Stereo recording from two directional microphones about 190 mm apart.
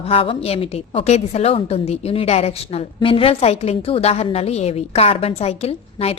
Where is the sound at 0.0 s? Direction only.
30° left (ahead or behind).